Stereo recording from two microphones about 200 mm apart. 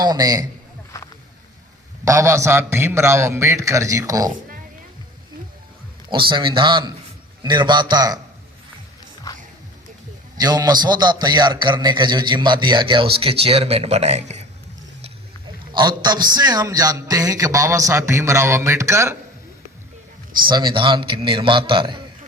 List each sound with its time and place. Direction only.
0.0 s a man's voice: 20° right (ahead or behind)
2.0 s a man's voice: 15° right (ahead or behind)
6.1 s a man's voice: 25° right (ahead or behind)
9.3 s music: 15° left (ahead or behind)
10.3 s a man's voice: 20° right (ahead or behind)
15.7 s a man's voice: 20° right (ahead or behind)
20.5 s a man's voice: 25° right (ahead or behind)